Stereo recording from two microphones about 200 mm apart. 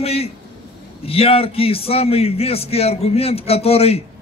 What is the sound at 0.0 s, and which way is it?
A man's voice, 30° left (ahead or behind).